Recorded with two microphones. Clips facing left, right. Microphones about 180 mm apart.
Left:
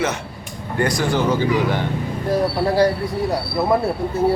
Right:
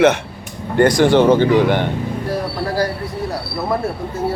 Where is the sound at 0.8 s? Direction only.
70° right (ahead or behind).